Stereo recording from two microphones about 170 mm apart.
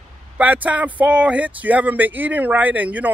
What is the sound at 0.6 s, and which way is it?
Speech, 10° right (ahead or behind).